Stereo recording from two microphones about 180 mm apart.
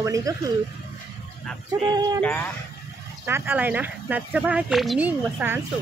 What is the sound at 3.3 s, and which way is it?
Speech, 10° right (ahead or behind).